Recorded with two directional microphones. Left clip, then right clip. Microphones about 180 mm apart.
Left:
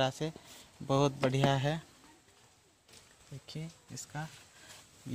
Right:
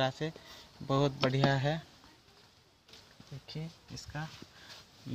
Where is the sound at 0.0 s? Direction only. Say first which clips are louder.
Even; 20° left (ahead or behind).